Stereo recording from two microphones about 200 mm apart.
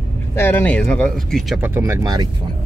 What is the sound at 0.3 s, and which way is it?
Speech, 10° left (ahead or behind).